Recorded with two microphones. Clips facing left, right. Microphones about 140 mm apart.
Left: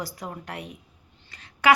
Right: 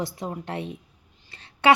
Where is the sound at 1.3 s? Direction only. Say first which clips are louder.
Right 2 dB; 30° right (ahead or behind).